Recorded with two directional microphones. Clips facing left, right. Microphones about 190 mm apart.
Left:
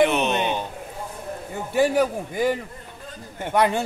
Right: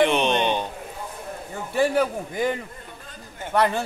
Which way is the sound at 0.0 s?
5° left (ahead or behind).